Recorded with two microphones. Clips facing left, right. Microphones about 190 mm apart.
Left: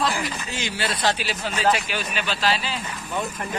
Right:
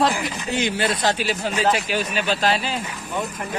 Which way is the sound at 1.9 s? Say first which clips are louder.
Right 5 dB; 40° right (ahead or behind).